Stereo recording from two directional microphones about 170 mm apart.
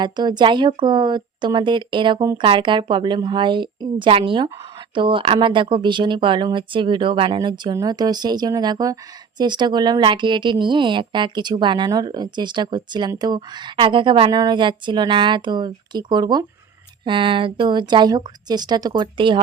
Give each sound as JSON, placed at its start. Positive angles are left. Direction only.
{"t": 0.0, "sound": "speech", "side_deg": -25}